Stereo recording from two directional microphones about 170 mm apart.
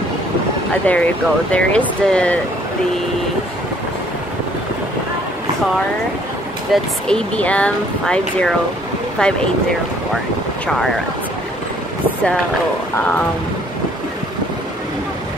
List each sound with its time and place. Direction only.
0.8 s speech: 10° left (ahead or behind)
6.7 s speech: 5° left (ahead or behind)
12.9 s speech: 10° left (ahead or behind)